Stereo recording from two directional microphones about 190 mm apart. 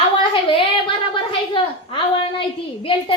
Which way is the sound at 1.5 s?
25° left (ahead or behind).